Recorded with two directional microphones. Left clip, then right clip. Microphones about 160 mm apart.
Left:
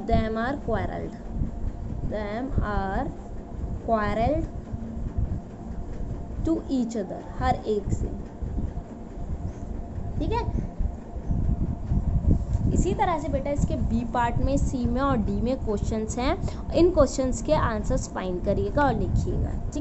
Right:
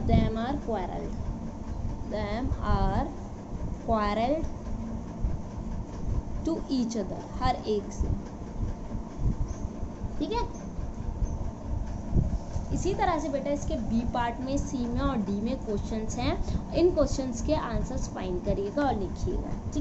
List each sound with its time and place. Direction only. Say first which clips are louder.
0.0 s a woman's voice: left 3 dB; 40° left (ahead or behind)
2.1 s a woman's voice: left 2 dB; 20° left (ahead or behind)
6.4 s a woman's voice: left 4 dB; 20° left (ahead or behind)
12.8 s a woman's voice: left 2 dB; 20° left (ahead or behind); by 19.0 s 45° left (ahead or behind)